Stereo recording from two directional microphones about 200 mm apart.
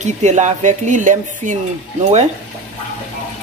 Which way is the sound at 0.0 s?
35° right (ahead or behind).